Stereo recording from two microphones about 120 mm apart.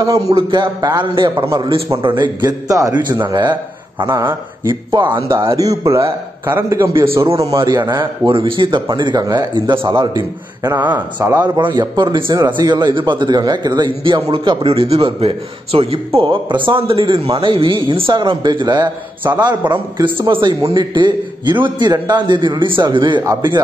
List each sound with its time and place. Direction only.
0.3 s a man's voice: 45° right (ahead or behind)
4.0 s a man's voice: 20° right (ahead or behind)
4.6 s a man's voice: 40° right (ahead or behind)
5.3 s a man's voice: 25° right (ahead or behind)
10.8 s a man's voice: 15° right (ahead or behind)
11.3 s a man's voice: 35° right (ahead or behind); by 16.0 s 55° right (ahead or behind)
16.2 s a man's voice: 45° right (ahead or behind)